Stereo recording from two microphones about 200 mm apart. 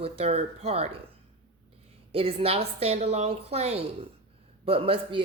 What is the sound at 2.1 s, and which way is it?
Speech, 30° right (ahead or behind).